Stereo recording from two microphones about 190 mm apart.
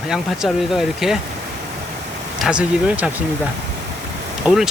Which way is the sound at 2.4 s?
5° right (ahead or behind).